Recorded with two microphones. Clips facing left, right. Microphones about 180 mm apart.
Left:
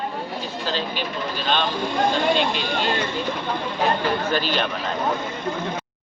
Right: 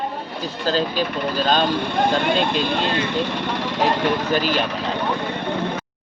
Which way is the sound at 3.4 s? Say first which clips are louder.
Right 2 dB; 85° right.